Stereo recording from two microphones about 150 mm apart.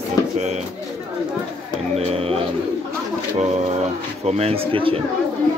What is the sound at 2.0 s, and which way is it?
Speech, 45° right (ahead or behind).